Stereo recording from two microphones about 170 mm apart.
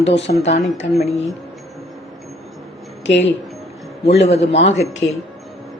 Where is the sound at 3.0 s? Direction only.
90° left.